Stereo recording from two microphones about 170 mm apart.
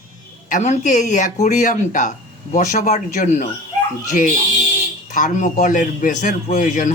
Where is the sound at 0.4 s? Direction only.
45° left (ahead or behind).